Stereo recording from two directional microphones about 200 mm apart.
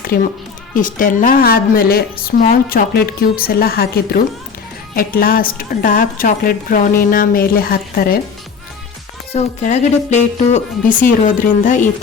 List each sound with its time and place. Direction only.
0.7 s a woman's voice: 40° left (ahead or behind)
9.3 s speech: 35° left (ahead or behind)